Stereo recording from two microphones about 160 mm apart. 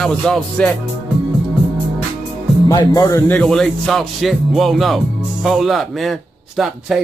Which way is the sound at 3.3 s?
5° left (ahead or behind).